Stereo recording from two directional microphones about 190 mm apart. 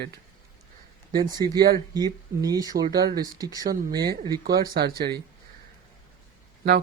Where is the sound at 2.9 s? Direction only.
55° right (ahead or behind).